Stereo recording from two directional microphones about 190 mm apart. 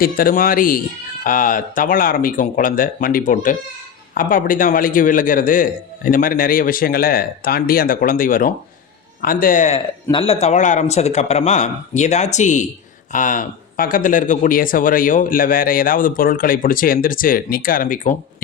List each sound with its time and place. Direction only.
0.0 s speech: 50° left (ahead or behind)
10.1 s speech: 30° left (ahead or behind); by 18.2 s 45° left (ahead or behind)